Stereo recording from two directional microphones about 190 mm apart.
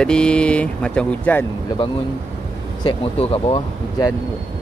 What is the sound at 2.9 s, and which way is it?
Speech, 25° left (ahead or behind).